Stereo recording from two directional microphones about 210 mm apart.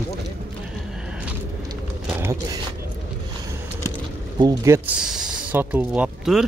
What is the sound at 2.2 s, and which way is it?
Speech, 15° right (ahead or behind).